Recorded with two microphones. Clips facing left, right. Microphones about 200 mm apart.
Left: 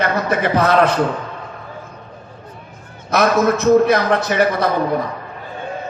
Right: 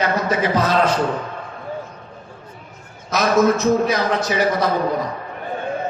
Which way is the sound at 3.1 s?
60° left (ahead or behind).